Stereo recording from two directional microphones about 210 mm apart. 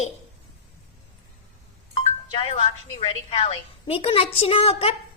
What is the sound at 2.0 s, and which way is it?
A woman's voice, 30° left (ahead or behind).